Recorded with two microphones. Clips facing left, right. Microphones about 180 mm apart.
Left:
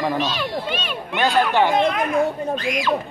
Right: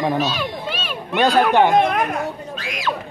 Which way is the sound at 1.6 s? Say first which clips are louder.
Right 2 dB; 55° right (ahead or behind).